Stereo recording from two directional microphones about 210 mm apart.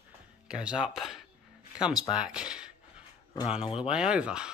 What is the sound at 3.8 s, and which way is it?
Speech, 5° right (ahead or behind).